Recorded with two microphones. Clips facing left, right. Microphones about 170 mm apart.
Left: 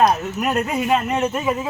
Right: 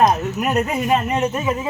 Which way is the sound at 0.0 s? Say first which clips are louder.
Right 1 dB; 20° right (ahead or behind).